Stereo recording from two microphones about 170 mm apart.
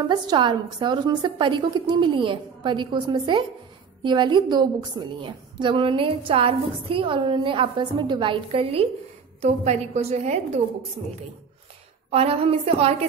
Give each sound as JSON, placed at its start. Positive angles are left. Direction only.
{"t": 0.0, "sound": "a woman's voice", "side_deg": -25}
{"t": 12.1, "sound": "a woman's voice", "side_deg": -35}